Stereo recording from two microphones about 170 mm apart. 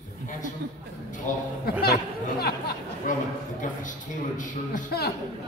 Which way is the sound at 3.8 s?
50° left (ahead or behind).